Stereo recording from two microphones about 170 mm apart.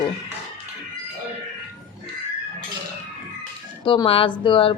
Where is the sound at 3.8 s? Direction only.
30° left (ahead or behind).